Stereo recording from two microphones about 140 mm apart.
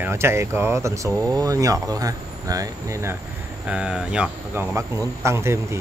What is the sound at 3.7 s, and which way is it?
Speech, 5° right (ahead or behind).